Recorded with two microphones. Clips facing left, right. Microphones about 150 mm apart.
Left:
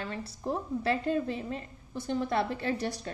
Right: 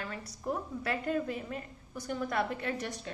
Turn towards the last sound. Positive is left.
turn(degrees=35)  # may be behind; listen again after turning